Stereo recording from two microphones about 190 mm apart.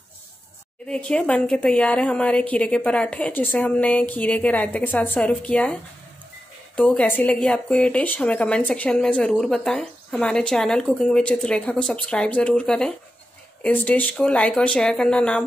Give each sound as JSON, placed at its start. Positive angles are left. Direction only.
{"t": 0.8, "sound": "a woman's voice", "side_deg": 5}